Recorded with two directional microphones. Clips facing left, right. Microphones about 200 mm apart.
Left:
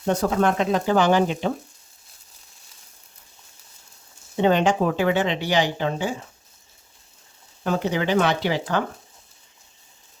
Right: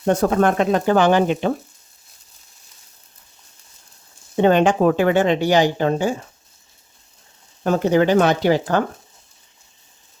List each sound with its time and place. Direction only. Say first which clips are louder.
0.0 s speech: right 4 dB; 50° right (ahead or behind)
4.4 s speech: right 4 dB; 55° right (ahead or behind)
7.6 s speech: right 7 dB; 45° right (ahead or behind)